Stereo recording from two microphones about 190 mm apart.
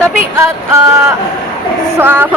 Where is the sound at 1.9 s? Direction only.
10° right (ahead or behind).